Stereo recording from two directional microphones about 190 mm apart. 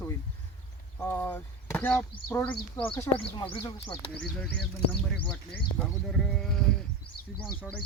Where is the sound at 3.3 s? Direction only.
25° left (ahead or behind).